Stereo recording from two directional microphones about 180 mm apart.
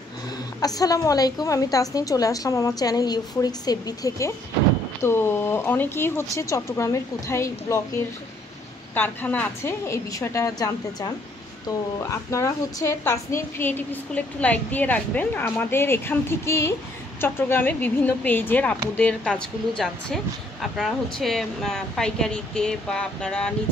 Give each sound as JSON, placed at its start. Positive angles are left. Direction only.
{"t": 0.6, "sound": "a woman's voice", "side_deg": 20}
{"t": 8.9, "sound": "a woman's voice", "side_deg": 10}